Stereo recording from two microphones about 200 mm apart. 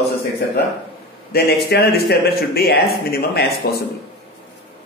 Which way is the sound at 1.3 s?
50° left (ahead or behind).